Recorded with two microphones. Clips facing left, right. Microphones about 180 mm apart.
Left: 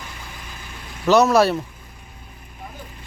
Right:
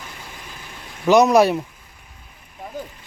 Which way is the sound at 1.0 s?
15° right (ahead or behind).